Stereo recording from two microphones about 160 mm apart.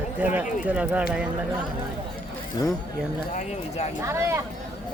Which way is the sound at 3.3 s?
40° left (ahead or behind).